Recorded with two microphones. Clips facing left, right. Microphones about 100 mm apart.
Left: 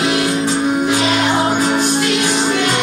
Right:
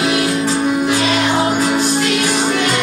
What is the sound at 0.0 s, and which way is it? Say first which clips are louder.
Music: even; 25° left (ahead or behind).